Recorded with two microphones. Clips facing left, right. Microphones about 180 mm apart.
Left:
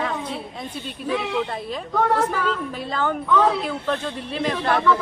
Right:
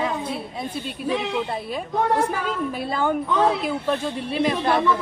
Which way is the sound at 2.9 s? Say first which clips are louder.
Left 2 dB; 10° right (ahead or behind).